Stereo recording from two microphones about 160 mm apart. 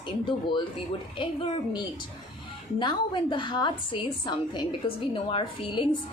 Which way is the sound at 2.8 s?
30° left (ahead or behind).